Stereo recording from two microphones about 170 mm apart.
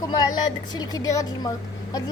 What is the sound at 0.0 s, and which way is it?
A woman's voice, 25° left (ahead or behind).